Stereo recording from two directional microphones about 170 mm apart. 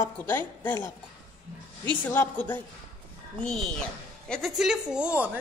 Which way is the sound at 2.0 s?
10° left (ahead or behind).